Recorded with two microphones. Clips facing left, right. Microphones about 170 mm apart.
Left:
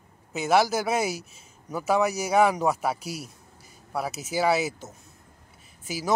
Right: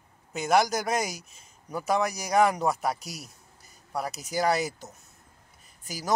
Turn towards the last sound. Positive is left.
turn(degrees=5)  # may be behind; listen again after turning